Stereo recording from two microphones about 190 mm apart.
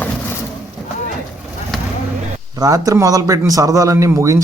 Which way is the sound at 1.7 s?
Centre (ahead or behind).